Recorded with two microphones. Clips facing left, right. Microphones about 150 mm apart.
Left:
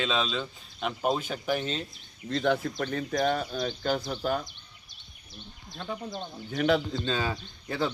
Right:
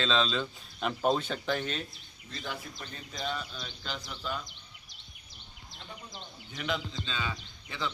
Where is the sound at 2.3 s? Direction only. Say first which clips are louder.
Left 14 dB; 75° left (ahead or behind); by 4.4 s 50° left (ahead or behind).